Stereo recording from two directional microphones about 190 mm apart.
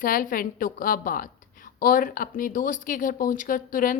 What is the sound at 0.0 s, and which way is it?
Speech, 45° left (ahead or behind).